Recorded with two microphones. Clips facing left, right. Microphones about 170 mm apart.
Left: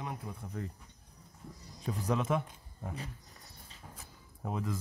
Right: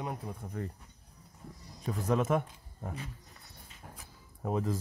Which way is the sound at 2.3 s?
45° right (ahead or behind).